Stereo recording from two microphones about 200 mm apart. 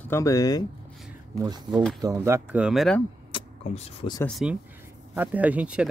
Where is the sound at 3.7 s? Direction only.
30° left (ahead or behind).